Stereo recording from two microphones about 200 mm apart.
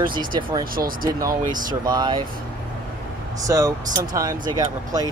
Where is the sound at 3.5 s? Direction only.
15° right (ahead or behind).